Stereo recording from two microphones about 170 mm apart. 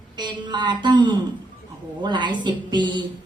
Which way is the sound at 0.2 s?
25° right (ahead or behind).